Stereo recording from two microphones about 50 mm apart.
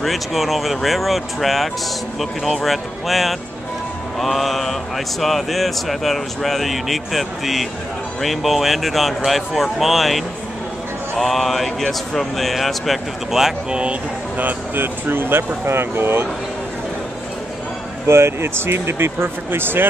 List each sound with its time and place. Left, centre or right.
0.0 s speech: centre
13.7 s speech: right
14.4 s speech: right
18.0 s speech: right